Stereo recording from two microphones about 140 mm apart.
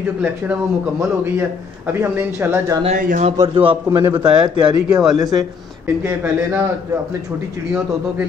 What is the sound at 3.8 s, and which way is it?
Speech, 15° right (ahead or behind).